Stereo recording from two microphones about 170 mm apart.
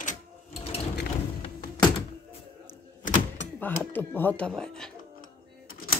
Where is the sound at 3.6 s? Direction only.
10° left (ahead or behind).